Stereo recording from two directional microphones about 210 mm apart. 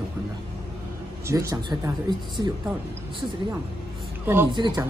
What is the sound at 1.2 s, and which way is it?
Speech, 15° right (ahead or behind).